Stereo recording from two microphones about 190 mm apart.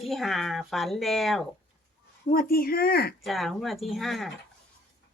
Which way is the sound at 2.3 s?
50° left (ahead or behind).